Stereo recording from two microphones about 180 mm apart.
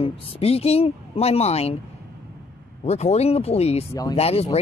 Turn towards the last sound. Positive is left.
turn(degrees=35)  # may be behind; listen again after turning